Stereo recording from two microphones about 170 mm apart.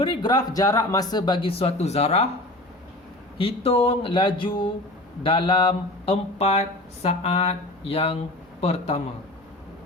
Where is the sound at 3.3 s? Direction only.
35° left (ahead or behind).